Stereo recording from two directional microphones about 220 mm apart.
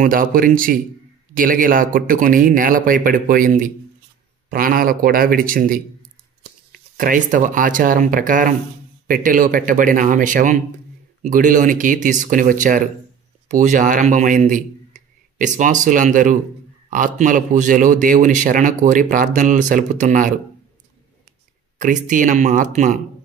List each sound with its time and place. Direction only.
0.0 s a man's voice: 40° right (ahead or behind)
21.7 s a man's voice: 35° right (ahead or behind)